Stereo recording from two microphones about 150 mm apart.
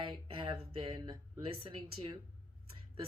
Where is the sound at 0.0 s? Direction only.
35° right (ahead or behind).